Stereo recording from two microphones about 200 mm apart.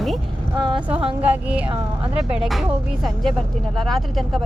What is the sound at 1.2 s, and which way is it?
Speech, 5° right (ahead or behind).